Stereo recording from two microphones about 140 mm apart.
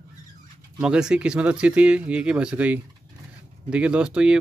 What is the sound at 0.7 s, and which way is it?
Speech, 5° right (ahead or behind).